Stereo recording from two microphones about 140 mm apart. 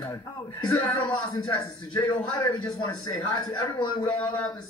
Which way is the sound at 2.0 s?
10° left (ahead or behind).